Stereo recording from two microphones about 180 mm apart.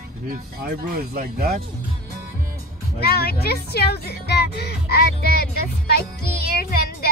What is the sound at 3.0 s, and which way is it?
Speech, 60° left (ahead or behind).